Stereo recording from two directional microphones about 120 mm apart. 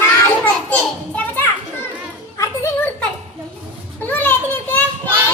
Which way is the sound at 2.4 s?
25° left (ahead or behind).